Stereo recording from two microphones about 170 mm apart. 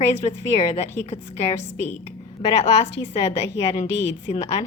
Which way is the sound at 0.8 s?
40° left (ahead or behind).